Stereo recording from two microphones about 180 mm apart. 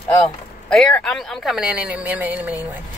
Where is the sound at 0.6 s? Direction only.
5° left (ahead or behind).